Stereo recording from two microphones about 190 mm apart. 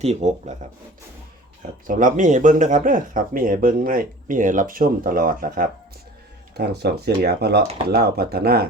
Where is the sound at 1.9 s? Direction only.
45° right (ahead or behind).